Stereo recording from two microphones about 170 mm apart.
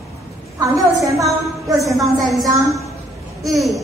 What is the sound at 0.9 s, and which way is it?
Speech, 20° right (ahead or behind).